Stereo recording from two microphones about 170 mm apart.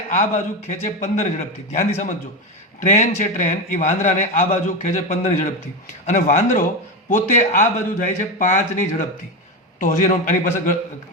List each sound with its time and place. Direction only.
0.1 s a man's voice: 45° left (ahead or behind)